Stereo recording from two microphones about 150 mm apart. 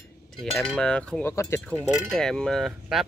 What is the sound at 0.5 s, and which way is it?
Cutlery, 5° left (ahead or behind).